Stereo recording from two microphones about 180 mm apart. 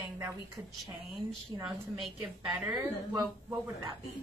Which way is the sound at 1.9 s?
Centre (ahead or behind).